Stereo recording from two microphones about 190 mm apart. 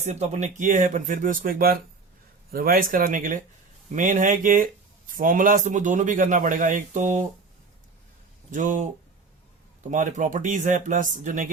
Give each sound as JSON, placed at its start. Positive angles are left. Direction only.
{"t": 0.0, "sound": "speech", "side_deg": -35}
{"t": 8.4, "sound": "speech", "side_deg": -40}
{"t": 9.9, "sound": "speech", "side_deg": -40}